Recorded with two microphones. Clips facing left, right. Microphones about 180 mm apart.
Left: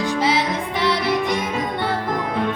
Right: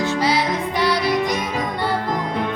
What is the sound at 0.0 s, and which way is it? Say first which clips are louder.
Music: even; 20° left (ahead or behind).